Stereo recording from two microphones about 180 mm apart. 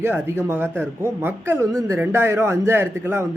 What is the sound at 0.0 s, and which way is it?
A man's voice, 15° right (ahead or behind).